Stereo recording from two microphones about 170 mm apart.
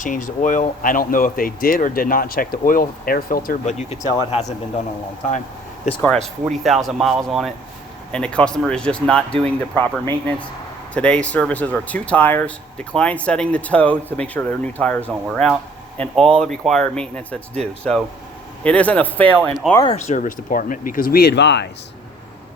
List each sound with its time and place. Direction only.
0.0 s speech: 50° left (ahead or behind)
6.0 s speech: 5° left (ahead or behind)
19.7 s speech: 25° left (ahead or behind)
20.1 s speech: 50° left (ahead or behind); by 21.7 s 90° left